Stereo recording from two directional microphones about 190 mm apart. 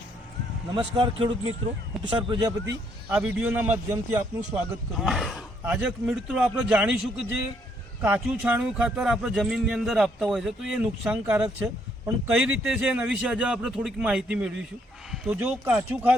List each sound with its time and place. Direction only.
0.9 s speech: 25° right (ahead or behind)
3.1 s a man's voice: 10° right (ahead or behind)